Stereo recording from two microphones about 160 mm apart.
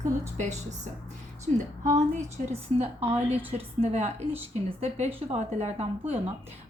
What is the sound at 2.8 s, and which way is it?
A woman's voice, 40° right (ahead or behind).